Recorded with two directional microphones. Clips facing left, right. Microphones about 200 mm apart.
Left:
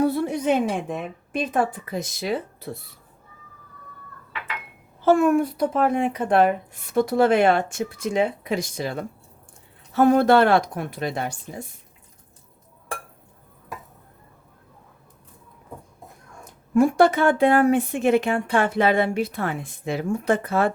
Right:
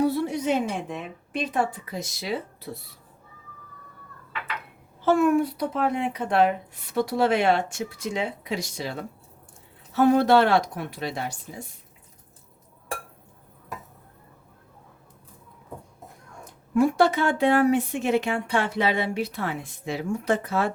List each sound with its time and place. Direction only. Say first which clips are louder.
0.0 s a woman's voice: left 2 dB; 50° left (ahead or behind)
5.0 s speech: left 2 dB; 50° left (ahead or behind)
16.4 s speech: left 3 dB; 50° left (ahead or behind)